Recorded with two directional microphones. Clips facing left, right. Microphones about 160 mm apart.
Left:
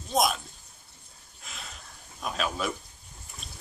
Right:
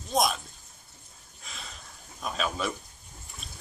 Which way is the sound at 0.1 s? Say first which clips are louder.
Left 1 dB; centre (ahead or behind).